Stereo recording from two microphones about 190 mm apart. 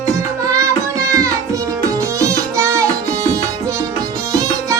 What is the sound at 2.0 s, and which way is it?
Music, 15° right (ahead or behind).